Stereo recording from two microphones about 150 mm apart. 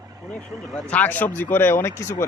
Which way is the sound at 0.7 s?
10° left (ahead or behind).